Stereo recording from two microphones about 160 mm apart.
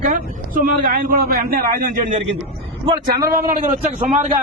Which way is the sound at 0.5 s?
60° right (ahead or behind).